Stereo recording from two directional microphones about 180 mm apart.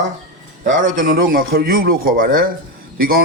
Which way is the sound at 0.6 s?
45° right (ahead or behind).